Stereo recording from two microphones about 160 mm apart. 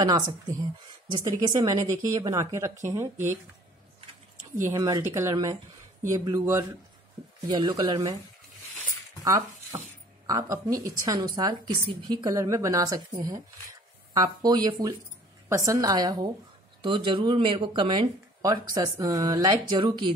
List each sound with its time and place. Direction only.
0.0 s a woman's voice: 25° right (ahead or behind)
1.4 s a woman's voice: 25° right (ahead or behind)
4.6 s a woman's voice: 20° right (ahead or behind)
9.2 s a woman's voice: 20° right (ahead or behind)